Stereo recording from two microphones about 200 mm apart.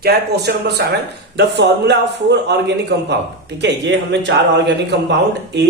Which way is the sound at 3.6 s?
60° right (ahead or behind).